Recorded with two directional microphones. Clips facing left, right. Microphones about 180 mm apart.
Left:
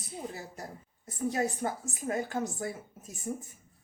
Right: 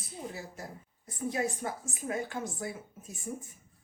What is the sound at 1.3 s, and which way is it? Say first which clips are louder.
Speech: left 1 dB; 40° left (ahead or behind).